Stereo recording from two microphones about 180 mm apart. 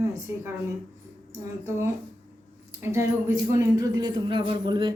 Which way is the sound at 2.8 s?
15° right (ahead or behind).